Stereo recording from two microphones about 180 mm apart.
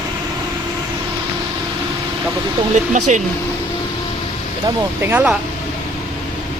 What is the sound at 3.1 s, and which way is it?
Speech, 40° right (ahead or behind).